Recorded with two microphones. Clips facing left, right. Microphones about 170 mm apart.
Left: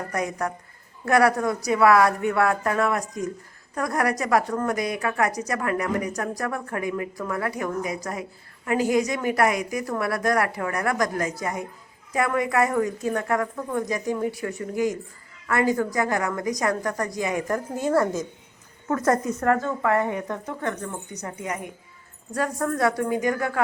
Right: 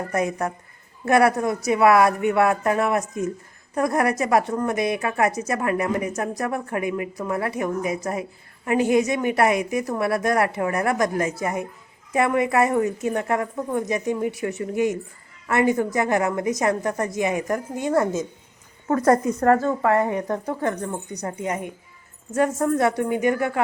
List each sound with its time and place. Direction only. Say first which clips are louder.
0.1 s a woman's voice: right 4 dB; 25° right (ahead or behind)
18.9 s a woman's voice: right 4 dB; 35° right (ahead or behind)